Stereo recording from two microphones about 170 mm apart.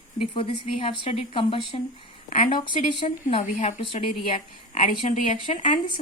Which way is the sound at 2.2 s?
50° left (ahead or behind).